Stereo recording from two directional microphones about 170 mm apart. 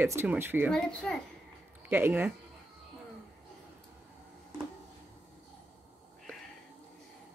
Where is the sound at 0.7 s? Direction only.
5° left (ahead or behind).